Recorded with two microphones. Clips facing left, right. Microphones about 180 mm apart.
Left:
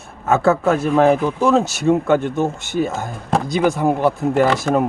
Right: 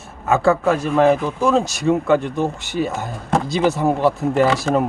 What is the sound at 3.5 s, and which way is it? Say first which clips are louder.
Speech: left 1 dB; 15° left (ahead or behind).